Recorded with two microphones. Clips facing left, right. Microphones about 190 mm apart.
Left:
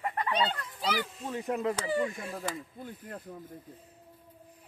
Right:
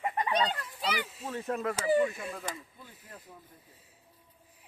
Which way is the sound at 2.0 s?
35° left (ahead or behind).